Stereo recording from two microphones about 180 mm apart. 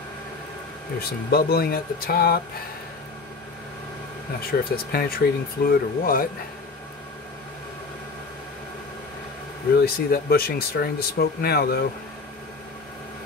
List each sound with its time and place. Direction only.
1.3 s speech: 60° left (ahead or behind)
4.5 s speech: 60° left (ahead or behind)
9.8 s speech: 60° left (ahead or behind)